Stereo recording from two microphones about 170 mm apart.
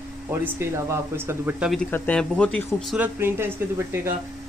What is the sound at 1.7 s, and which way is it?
Speech, 5° left (ahead or behind).